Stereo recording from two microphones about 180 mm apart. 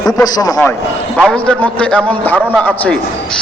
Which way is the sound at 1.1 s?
5° left (ahead or behind).